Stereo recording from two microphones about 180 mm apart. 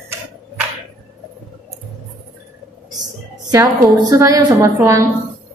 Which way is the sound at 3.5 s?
20° right (ahead or behind).